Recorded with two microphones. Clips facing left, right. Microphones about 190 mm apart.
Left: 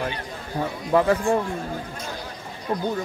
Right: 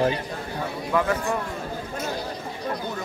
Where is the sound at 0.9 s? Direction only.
30° left (ahead or behind).